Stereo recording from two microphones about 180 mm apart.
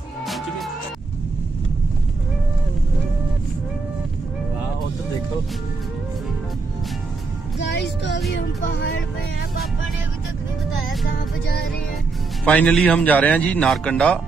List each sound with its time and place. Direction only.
7.5 s music: 75° left (ahead or behind)
11.1 s music: 55° left (ahead or behind)
12.4 s a man's voice: 5° left (ahead or behind)